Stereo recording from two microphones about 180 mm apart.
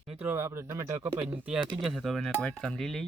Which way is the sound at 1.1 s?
25° right (ahead or behind).